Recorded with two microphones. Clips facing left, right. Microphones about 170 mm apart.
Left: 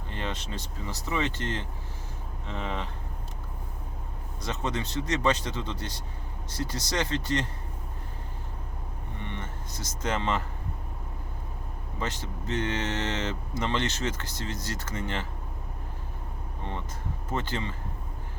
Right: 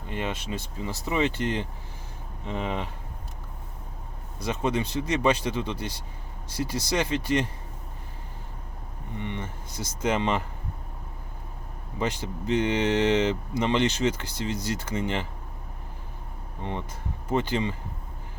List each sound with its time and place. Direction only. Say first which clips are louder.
0.1 s speech: right 4 dB; 10° right (ahead or behind)
4.4 s speech: right 5 dB; 10° right (ahead or behind)
9.1 s a sound: right 5 dB; 15° right (ahead or behind)
11.9 s speech: right 5 dB; 15° right (ahead or behind)
17.3 s speech: right 6 dB; 15° right (ahead or behind)